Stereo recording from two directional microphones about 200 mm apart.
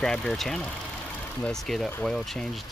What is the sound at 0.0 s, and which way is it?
Speech, 5° left (ahead or behind).